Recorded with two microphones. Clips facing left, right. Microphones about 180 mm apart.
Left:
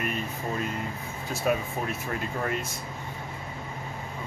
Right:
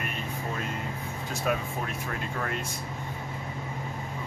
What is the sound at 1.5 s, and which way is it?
Speech, 5° left (ahead or behind).